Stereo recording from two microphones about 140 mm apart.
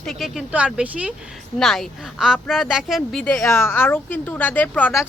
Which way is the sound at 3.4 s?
20° left (ahead or behind).